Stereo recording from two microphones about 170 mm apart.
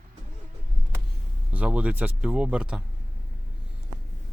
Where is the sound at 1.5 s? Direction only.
10° right (ahead or behind).